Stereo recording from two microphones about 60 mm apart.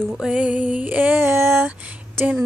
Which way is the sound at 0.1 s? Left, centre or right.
Centre.